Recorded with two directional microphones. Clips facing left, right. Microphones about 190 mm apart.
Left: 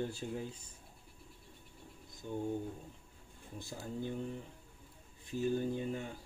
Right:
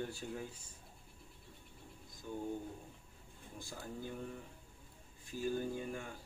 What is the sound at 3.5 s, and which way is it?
Speech, 20° left (ahead or behind).